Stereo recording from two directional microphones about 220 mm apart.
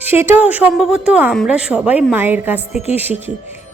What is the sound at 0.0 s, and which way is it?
Speech, 10° right (ahead or behind).